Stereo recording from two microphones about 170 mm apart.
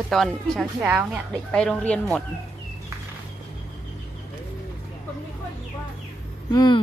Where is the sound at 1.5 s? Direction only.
5° left (ahead or behind).